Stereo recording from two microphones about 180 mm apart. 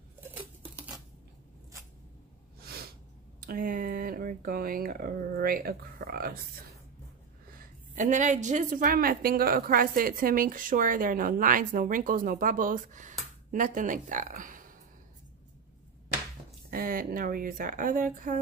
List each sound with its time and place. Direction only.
0.2 s patter: 10° right (ahead or behind)
2.6 s snort: 60° right (ahead or behind)
3.3 s speech: 50° right (ahead or behind)
7.9 s a woman's voice: 45° right (ahead or behind)
16.7 s a woman's voice: 55° right (ahead or behind)